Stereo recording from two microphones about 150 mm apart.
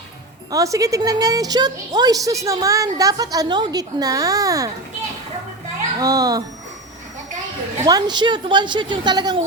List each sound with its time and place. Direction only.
0.5 s a woman's voice: 20° right (ahead or behind)
6.0 s a woman's voice: 25° right (ahead or behind)
7.9 s a woman's voice: 25° right (ahead or behind)